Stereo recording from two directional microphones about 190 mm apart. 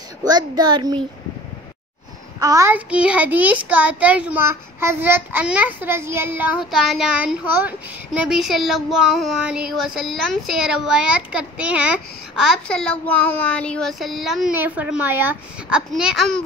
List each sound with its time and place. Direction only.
0.2 s a child's voice: 20° right (ahead or behind)
2.4 s a child's voice: 15° right (ahead or behind)